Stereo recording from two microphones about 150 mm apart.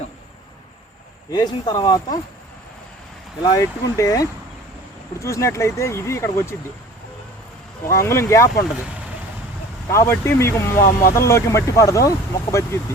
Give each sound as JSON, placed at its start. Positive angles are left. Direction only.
{"t": 1.3, "sound": "speech", "side_deg": 30}
{"t": 3.4, "sound": "speech", "side_deg": 20}
{"t": 7.9, "sound": "speech", "side_deg": 20}
{"t": 9.9, "sound": "speech", "side_deg": 20}